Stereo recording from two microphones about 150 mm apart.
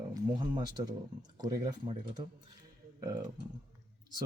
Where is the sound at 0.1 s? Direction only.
30° right (ahead or behind).